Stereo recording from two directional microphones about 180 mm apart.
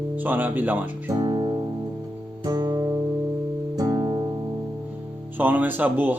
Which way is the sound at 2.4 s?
25° right (ahead or behind).